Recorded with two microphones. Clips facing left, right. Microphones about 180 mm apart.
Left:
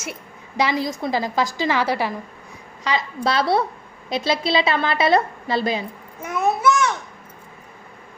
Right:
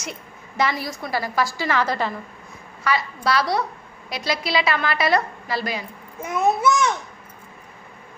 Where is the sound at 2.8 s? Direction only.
20° left (ahead or behind).